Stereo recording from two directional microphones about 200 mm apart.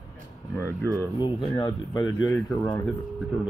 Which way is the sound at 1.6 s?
20° left (ahead or behind).